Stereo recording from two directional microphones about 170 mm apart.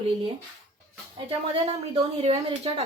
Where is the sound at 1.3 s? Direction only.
35° right (ahead or behind).